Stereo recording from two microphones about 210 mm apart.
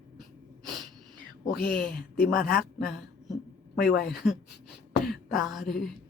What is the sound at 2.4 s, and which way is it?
Speech, 45° left (ahead or behind).